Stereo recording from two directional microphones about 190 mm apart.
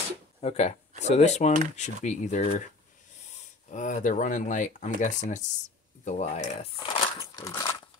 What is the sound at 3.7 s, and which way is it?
Speech, 40° left (ahead or behind).